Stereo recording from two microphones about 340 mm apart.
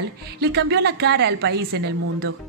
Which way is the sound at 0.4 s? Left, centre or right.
Right.